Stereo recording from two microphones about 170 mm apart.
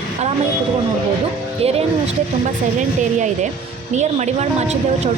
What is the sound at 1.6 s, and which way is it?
Speech, 35° right (ahead or behind).